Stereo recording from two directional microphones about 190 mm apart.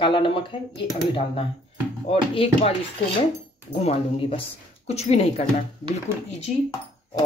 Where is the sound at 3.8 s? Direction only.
35° left (ahead or behind).